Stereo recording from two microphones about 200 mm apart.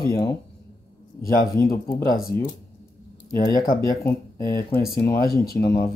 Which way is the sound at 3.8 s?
15° left (ahead or behind).